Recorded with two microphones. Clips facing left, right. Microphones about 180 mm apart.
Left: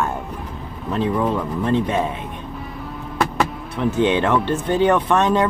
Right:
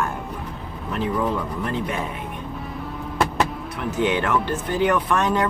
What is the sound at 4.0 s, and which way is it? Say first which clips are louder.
Speech: left 3 dB; 25° left (ahead or behind).